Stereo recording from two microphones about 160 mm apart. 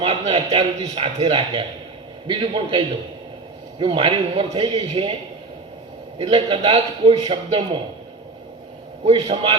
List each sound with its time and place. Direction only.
0.0 s a man's voice: 40° right (ahead or behind)
6.1 s a man's voice: 35° right (ahead or behind)
9.0 s a man's voice: 40° right (ahead or behind)